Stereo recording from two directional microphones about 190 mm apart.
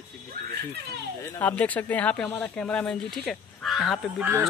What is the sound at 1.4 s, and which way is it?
Speech, 10° left (ahead or behind).